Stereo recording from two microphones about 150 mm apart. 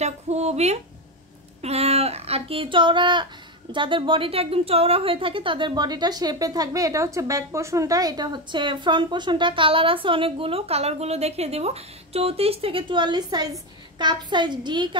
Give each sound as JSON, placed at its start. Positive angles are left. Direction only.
{"t": 0.0, "sound": "a woman's voice", "side_deg": -45}